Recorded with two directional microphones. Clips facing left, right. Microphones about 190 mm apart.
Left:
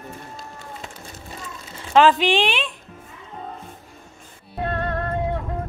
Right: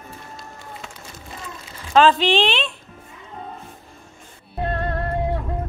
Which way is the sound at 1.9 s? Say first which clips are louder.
Even; 15° left (ahead or behind).